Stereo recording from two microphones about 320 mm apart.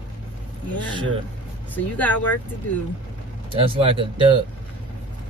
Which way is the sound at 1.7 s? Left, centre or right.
Centre.